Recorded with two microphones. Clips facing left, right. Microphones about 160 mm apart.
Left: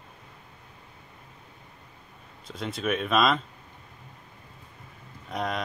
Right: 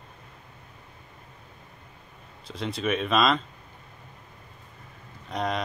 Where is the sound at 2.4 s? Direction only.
Centre (ahead or behind).